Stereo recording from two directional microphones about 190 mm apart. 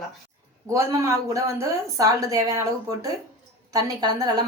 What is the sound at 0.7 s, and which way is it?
A woman's voice, 15° right (ahead or behind).